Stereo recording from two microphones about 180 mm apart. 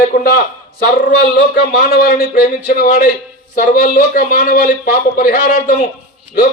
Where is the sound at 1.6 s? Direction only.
55° left (ahead or behind).